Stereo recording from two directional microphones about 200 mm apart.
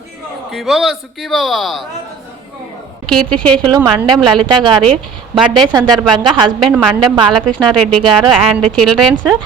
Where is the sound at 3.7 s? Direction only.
20° right (ahead or behind).